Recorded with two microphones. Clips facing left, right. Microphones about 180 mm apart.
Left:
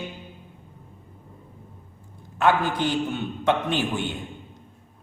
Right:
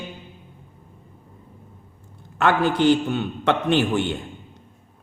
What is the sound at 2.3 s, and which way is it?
A man's voice, 75° right (ahead or behind).